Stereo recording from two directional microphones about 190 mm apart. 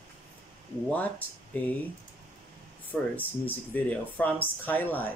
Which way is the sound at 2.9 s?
10° left (ahead or behind).